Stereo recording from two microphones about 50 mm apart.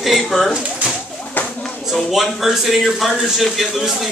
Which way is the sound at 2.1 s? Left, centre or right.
Centre.